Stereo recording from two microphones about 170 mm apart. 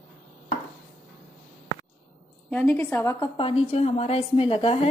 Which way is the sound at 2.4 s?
10° left (ahead or behind).